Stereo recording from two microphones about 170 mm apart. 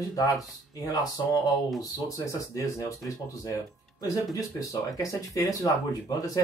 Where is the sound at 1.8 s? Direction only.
20° left (ahead or behind).